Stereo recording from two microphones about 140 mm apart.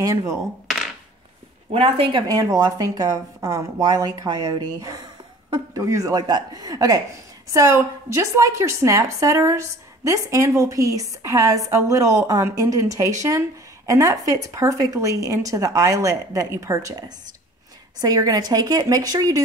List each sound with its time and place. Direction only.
0.0 s a woman's voice: 25° right (ahead or behind)
1.7 s speech: 45° right (ahead or behind)
2.2 s a woman's voice: 25° right (ahead or behind)
18.0 s a woman's voice: 25° right (ahead or behind)